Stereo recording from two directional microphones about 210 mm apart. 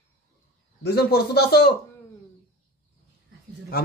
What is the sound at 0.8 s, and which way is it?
Speech, 50° left (ahead or behind).